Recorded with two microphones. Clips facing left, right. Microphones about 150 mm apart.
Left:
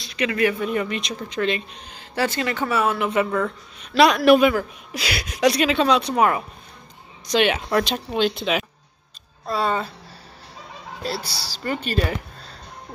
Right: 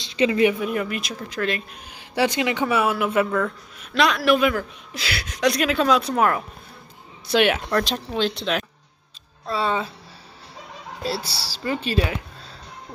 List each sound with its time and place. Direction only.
0.0 s speech: 25° right (ahead or behind)
0.6 s speech: 5° right (ahead or behind)
2.0 s speech: 15° right (ahead or behind); by 4.6 s centre (ahead or behind)
4.9 s speech: 15° left (ahead or behind)
7.5 s speech: 5° left (ahead or behind)
11.4 s speech: 5° right (ahead or behind)